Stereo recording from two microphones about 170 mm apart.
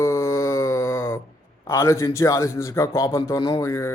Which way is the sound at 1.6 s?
15° left (ahead or behind).